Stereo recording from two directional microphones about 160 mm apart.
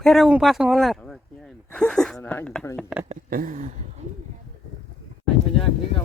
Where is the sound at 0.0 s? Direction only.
Centre (ahead or behind).